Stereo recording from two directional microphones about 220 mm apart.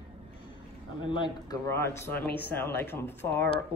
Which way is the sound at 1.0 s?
20° left (ahead or behind).